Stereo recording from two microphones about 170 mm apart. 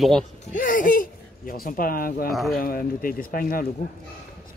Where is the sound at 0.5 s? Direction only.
55° left (ahead or behind).